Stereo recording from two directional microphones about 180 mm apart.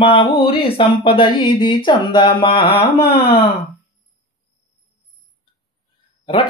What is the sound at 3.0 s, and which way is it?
Speech, 60° left (ahead or behind).